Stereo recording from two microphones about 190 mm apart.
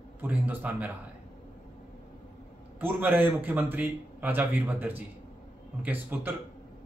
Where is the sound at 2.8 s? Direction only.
10° right (ahead or behind).